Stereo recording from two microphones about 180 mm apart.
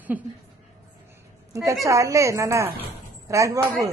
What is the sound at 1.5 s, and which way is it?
A woman's voice, 15° right (ahead or behind).